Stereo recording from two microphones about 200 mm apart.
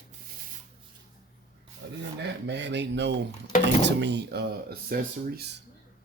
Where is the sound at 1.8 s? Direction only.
55° right (ahead or behind).